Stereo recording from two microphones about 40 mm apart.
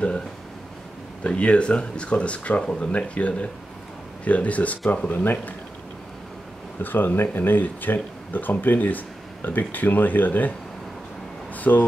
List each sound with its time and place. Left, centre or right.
1.2 s speech: left
5.2 s speech: left
6.8 s speech: left
11.5 s a sound: left